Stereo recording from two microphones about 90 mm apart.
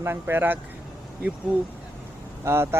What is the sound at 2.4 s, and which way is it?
Speech, 25° right (ahead or behind).